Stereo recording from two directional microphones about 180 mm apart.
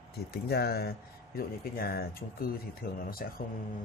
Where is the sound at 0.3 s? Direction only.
60° left (ahead or behind).